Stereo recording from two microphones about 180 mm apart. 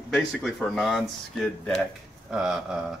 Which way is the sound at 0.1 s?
Centre (ahead or behind).